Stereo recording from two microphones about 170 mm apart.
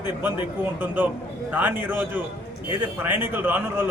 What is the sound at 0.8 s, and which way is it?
A man's voice, 10° right (ahead or behind).